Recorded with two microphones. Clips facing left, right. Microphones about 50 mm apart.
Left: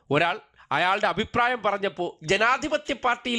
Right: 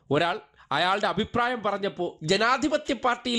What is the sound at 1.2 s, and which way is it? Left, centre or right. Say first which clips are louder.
Speech: left 2 dB; left.